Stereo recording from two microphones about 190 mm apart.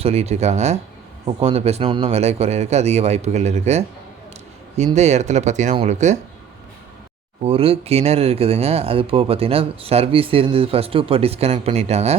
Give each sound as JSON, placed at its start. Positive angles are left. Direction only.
{"t": 0.0, "sound": "speech", "side_deg": -35}
{"t": 4.9, "sound": "speech", "side_deg": -35}
{"t": 7.4, "sound": "speech", "side_deg": -30}